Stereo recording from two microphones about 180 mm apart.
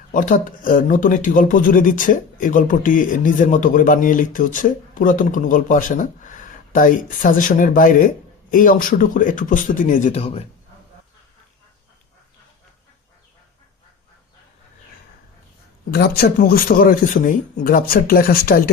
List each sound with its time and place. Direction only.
0.1 s speech: 45° left (ahead or behind)
15.9 s speech: 60° left (ahead or behind)